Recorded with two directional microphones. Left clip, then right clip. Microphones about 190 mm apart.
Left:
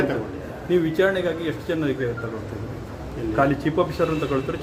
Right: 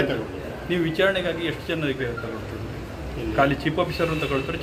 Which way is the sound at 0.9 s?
50° left (ahead or behind).